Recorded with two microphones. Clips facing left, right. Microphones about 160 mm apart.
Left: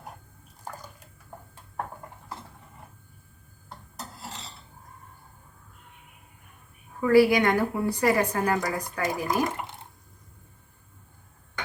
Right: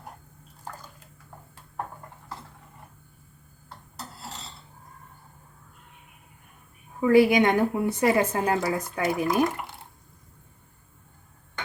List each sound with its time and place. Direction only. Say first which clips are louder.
7.0 s a woman's voice: right 1 dB; 20° right (ahead or behind)
9.2 s speech: right 3 dB; 20° left (ahead or behind)